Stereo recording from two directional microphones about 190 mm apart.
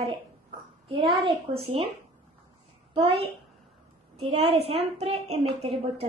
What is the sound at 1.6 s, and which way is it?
Speech, 30° right (ahead or behind).